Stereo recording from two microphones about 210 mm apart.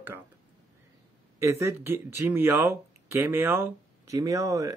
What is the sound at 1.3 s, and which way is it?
Speech, 15° right (ahead or behind).